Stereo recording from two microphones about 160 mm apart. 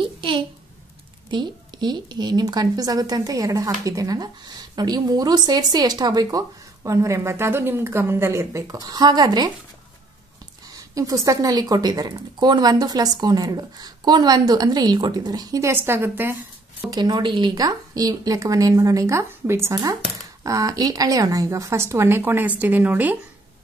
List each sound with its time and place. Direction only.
0.0 s a sound: 30° right (ahead or behind)
1.3 s speech: 25° right (ahead or behind)
10.7 s speech: 20° right (ahead or behind)
16.9 s a woman's voice: 25° right (ahead or behind); by 23.1 s 10° right (ahead or behind)